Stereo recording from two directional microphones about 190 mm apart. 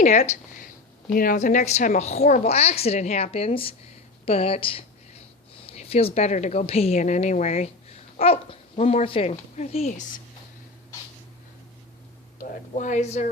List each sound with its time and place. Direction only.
0.0 s speech: 40° left (ahead or behind)
12.4 s speech: 40° left (ahead or behind)